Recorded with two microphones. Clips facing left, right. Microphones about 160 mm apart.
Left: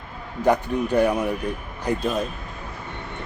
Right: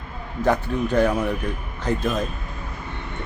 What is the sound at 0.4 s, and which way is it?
A man's voice, 10° left (ahead or behind).